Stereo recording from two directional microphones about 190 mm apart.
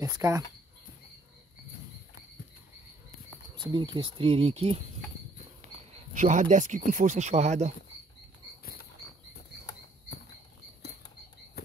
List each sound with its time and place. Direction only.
0.0 s speech: 15° right (ahead or behind)
3.7 s speech: 25° right (ahead or behind)
6.1 s speech: 40° right (ahead or behind)
11.6 s frog: 55° left (ahead or behind)